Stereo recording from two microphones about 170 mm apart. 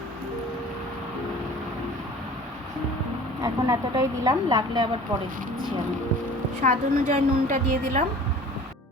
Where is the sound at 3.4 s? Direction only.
20° right (ahead or behind).